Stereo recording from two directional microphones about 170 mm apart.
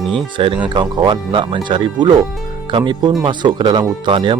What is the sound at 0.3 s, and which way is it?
Speech, 30° right (ahead or behind).